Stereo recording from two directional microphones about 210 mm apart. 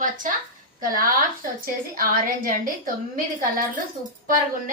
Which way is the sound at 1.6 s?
40° right (ahead or behind).